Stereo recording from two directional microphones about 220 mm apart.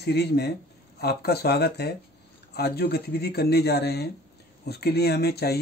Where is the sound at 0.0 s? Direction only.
50° left (ahead or behind).